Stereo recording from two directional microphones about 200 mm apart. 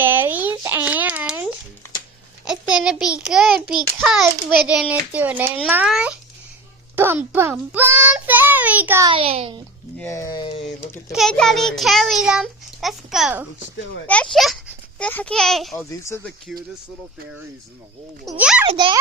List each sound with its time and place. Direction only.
0.0 s a sound: 10° right (ahead or behind)
2.4 s a child's voice: 5° right (ahead or behind)
9.0 s a child's voice: 30° right (ahead or behind)
10.0 s speech: 15° left (ahead or behind)
11.1 s a child's voice: centre (ahead or behind)
15.9 s speech: 15° left (ahead or behind)
18.3 s a child's voice: 5° right (ahead or behind)
18.7 s a child's voice: 25° right (ahead or behind)